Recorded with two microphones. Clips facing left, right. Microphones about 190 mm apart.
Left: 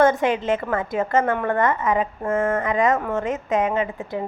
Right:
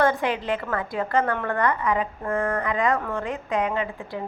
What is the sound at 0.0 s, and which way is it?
A woman's voice, 20° left (ahead or behind).